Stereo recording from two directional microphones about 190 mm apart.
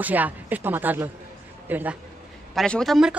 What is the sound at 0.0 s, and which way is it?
Speech, 10° right (ahead or behind).